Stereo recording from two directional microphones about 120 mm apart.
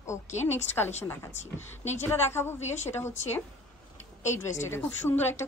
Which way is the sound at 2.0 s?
20° left (ahead or behind).